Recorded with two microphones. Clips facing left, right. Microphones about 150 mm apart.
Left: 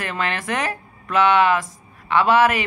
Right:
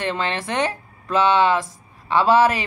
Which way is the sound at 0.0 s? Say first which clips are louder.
Right 1 dB; 25° right (ahead or behind).